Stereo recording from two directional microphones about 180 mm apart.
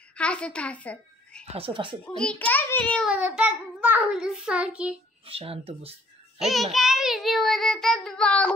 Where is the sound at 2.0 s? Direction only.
5° left (ahead or behind).